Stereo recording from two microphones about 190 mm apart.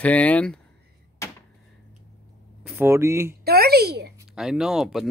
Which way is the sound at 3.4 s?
55° right (ahead or behind).